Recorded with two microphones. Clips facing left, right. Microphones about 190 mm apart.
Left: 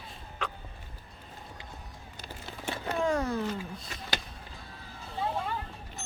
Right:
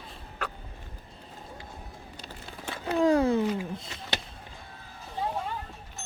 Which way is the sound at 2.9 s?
35° right (ahead or behind).